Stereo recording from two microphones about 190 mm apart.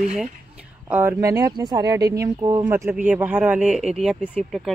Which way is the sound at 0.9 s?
10° right (ahead or behind).